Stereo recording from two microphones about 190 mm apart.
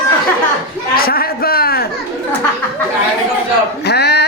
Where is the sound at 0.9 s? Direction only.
50° left (ahead or behind).